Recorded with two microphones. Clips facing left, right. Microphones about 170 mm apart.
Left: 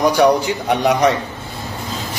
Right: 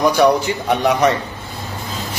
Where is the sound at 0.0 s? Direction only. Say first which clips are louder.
Even; 15° left (ahead or behind).